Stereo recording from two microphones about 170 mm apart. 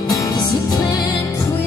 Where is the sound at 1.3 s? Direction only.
15° left (ahead or behind).